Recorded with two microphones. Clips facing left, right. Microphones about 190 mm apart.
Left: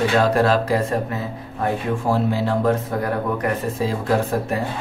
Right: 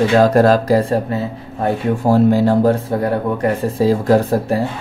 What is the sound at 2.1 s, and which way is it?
Speech, 40° right (ahead or behind).